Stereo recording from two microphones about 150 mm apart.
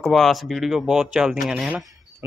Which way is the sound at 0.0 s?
Centre (ahead or behind).